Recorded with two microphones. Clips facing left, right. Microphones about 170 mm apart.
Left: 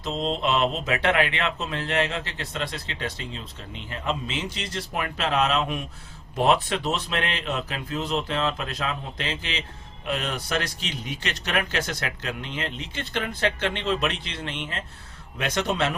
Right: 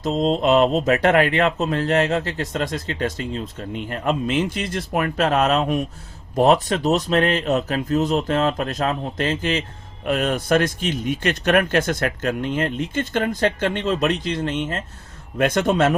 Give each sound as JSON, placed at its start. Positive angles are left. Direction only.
{"t": 0.0, "sound": "speech", "side_deg": -40}